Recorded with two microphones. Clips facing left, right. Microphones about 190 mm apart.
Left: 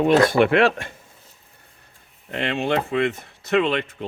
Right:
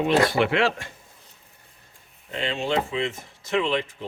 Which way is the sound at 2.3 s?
60° left (ahead or behind).